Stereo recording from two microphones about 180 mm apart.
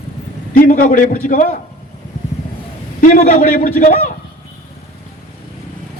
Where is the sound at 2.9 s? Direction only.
45° left (ahead or behind).